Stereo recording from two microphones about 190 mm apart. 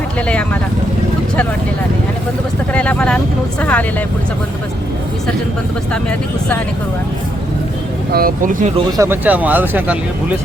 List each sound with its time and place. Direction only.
2.7 s speech: 5° left (ahead or behind)
5.9 s speech: 5° left (ahead or behind)
8.1 s speech: 50° right (ahead or behind)
9.0 s speech: 10° right (ahead or behind)